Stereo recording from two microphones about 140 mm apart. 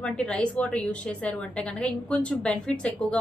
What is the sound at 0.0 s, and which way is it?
A woman's voice, 5° left (ahead or behind).